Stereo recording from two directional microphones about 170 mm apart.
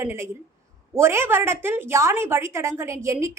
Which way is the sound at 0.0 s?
15° right (ahead or behind).